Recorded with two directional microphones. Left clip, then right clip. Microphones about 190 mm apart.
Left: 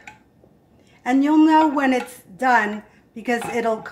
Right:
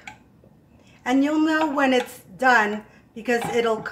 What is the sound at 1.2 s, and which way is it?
Speech, 35° left (ahead or behind).